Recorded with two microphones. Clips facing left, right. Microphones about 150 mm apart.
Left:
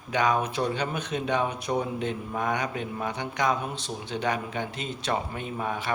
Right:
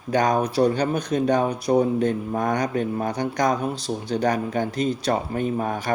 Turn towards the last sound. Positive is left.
turn(degrees=-45)  # may be behind; listen again after turning